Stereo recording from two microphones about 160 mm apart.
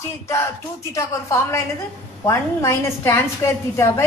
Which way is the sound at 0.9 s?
20° left (ahead or behind).